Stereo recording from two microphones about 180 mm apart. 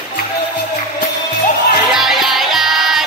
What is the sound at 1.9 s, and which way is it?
Music, centre (ahead or behind).